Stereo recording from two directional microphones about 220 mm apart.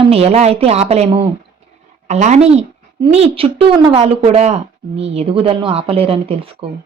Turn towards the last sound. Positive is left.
turn(degrees=-25)  # may be behind; listen again after turning